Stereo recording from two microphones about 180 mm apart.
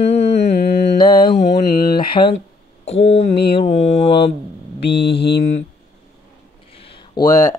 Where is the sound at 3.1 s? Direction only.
70° left (ahead or behind).